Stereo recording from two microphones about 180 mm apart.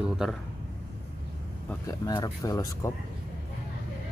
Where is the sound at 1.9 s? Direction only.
20° left (ahead or behind).